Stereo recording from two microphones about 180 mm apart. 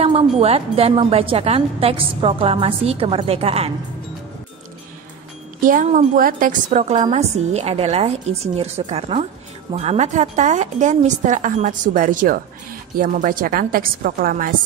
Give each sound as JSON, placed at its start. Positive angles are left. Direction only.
{"t": 0.0, "sound": "a woman's voice", "side_deg": -35}
{"t": 5.6, "sound": "a woman's voice", "side_deg": -45}